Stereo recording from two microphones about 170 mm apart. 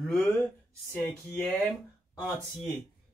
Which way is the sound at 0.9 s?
5° left (ahead or behind).